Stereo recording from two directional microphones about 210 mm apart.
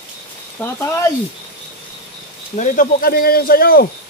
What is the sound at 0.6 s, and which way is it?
Speech, 15° left (ahead or behind).